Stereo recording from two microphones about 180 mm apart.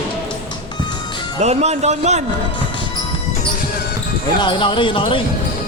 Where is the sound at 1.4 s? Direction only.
35° right (ahead or behind).